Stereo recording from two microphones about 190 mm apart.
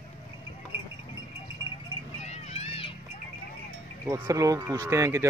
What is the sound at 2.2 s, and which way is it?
Clip-clop, 35° left (ahead or behind).